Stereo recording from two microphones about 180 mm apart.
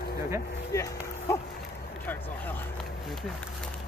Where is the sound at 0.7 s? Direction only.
15° left (ahead or behind).